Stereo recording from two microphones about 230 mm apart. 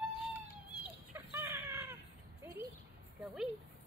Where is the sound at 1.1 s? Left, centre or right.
Centre.